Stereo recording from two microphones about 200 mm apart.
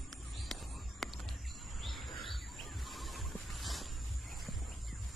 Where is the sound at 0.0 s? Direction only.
Centre (ahead or behind).